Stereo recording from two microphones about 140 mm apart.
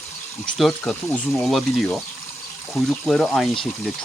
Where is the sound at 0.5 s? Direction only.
5° left (ahead or behind).